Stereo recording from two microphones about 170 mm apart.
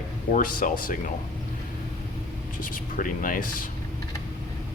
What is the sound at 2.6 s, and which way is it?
Speech, 55° left (ahead or behind).